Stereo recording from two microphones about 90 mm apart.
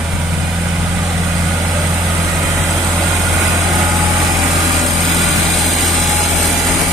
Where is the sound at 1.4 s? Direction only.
45° right (ahead or behind).